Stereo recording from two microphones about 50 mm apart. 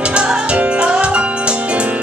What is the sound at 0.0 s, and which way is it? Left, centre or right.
Music, right.